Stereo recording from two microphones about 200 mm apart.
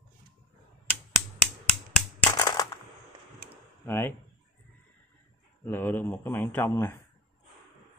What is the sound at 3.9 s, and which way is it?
Speech, 10° left (ahead or behind).